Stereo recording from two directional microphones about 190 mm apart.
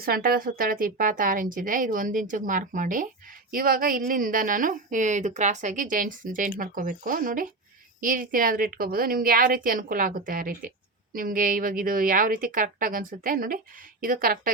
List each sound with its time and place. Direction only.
0.0 s a woman's voice: 50° right (ahead or behind)